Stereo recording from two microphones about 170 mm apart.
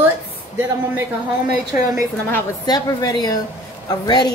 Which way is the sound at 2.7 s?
20° left (ahead or behind).